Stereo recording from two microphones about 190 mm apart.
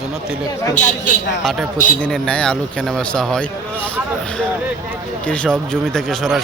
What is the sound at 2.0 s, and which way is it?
Speech, 5° left (ahead or behind).